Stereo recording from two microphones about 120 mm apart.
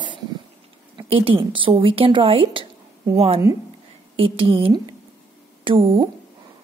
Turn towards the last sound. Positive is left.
turn(degrees=-50)  # may be behind; listen again after turning